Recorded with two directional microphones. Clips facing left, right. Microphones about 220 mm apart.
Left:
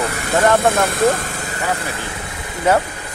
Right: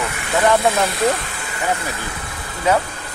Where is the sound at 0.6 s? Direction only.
50° left (ahead or behind).